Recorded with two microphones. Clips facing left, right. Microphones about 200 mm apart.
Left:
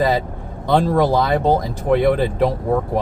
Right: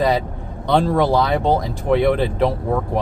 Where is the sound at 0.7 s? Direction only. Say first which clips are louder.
Left 1 dB; centre (ahead or behind).